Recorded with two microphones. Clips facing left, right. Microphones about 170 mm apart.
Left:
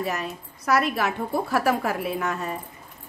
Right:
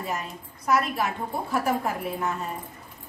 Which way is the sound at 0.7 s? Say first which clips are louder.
Left 2 dB; 75° left (ahead or behind).